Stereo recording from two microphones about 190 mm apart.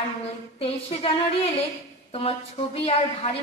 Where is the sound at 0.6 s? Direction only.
30° left (ahead or behind).